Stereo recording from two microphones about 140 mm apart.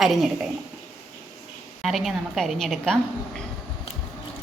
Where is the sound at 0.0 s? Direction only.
Centre (ahead or behind).